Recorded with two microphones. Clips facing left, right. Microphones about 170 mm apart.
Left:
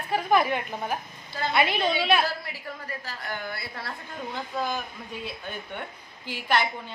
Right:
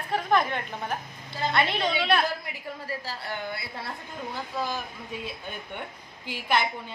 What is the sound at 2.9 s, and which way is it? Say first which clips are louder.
A woman's voice: right 2 dB; 30° right (ahead or behind).